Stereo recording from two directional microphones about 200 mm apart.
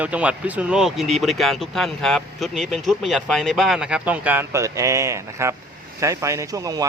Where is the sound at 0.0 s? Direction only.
5° right (ahead or behind).